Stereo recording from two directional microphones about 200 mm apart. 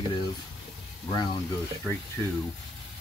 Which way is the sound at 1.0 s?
20° left (ahead or behind).